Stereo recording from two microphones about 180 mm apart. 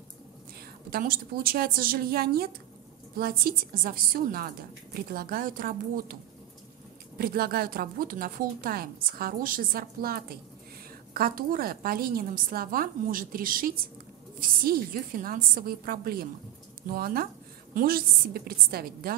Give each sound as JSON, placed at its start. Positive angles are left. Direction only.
{"t": 0.8, "sound": "a woman's voice", "side_deg": -55}
{"t": 7.2, "sound": "a woman's voice", "side_deg": -55}